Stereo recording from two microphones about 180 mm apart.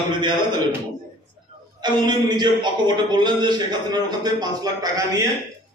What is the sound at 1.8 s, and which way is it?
Speech, 25° right (ahead or behind).